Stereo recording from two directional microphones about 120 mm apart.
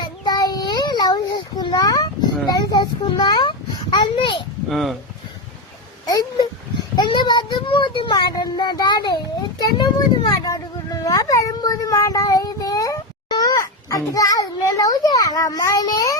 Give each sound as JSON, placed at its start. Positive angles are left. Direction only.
{"t": 0.0, "sound": "child singing", "side_deg": 35}
{"t": 2.5, "sound": "a sound", "side_deg": 35}
{"t": 4.7, "sound": "speech", "side_deg": 0}
{"t": 6.1, "sound": "a sound", "side_deg": 35}
{"t": 6.9, "sound": "child singing", "side_deg": 40}
{"t": 9.6, "sound": "a child's voice", "side_deg": 35}
{"t": 11.0, "sound": "child singing", "side_deg": 30}